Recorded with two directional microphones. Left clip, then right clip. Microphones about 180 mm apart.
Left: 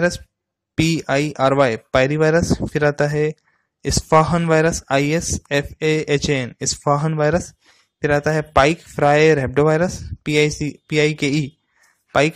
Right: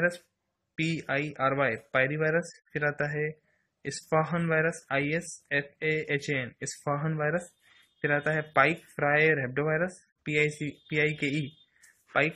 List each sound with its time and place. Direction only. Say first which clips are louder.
0.7 s speech: left 11 dB; 45° left (ahead or behind)